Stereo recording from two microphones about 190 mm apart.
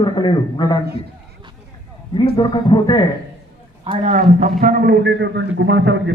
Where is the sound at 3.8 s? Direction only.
35° right (ahead or behind); by 6.1 s 65° right (ahead or behind).